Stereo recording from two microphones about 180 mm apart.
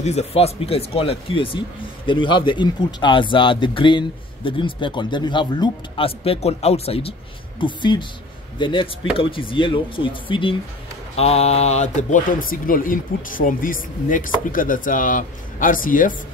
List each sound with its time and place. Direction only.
0.0 s speech: 35° left (ahead or behind)